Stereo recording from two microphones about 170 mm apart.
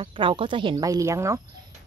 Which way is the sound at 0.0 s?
30° right (ahead or behind).